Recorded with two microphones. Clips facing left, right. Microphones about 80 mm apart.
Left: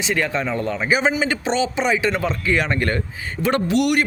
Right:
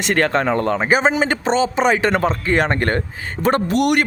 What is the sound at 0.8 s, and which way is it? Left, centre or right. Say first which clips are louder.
Speech: right 3 dB; right.